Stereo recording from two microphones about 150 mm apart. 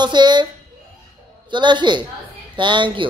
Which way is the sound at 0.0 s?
30° right (ahead or behind).